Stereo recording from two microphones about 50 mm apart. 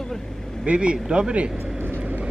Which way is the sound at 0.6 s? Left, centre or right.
Right.